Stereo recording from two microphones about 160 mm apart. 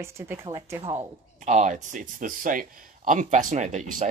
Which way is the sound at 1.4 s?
50° right (ahead or behind).